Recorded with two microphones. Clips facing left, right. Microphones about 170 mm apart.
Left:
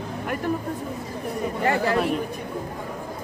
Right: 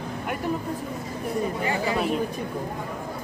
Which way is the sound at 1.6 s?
60° left (ahead or behind).